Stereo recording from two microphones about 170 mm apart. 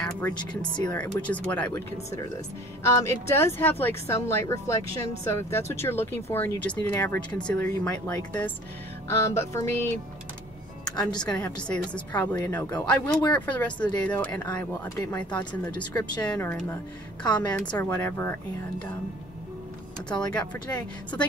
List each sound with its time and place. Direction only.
0.3 s speech: 25° left (ahead or behind)
0.8 s speech: 10° left (ahead or behind)
1.7 s a woman's voice: 20° left (ahead or behind)
11.2 s speech: 5° left (ahead or behind)
17.2 s speech: 25° left (ahead or behind)
17.5 s speech: 5° left (ahead or behind)
20.1 s speech: 5° left (ahead or behind)